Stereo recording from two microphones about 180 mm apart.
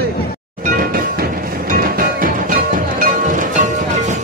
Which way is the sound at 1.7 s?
50° right (ahead or behind).